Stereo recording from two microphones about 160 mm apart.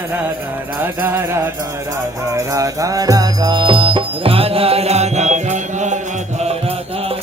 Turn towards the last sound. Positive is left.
turn(degrees=-50)  # may be behind; listen again after turning